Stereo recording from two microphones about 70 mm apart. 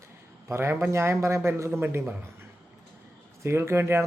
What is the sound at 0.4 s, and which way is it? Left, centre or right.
Speech, right.